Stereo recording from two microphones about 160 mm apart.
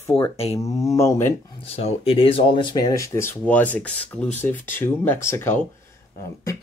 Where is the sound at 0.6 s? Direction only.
20° left (ahead or behind).